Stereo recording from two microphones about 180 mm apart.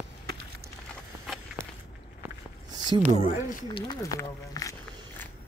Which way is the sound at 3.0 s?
40° left (ahead or behind).